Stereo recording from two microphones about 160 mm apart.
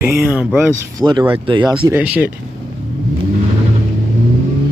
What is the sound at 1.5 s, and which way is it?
Speech, 30° right (ahead or behind).